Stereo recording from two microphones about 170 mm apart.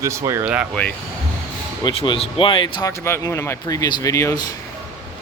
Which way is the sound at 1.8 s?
30° left (ahead or behind).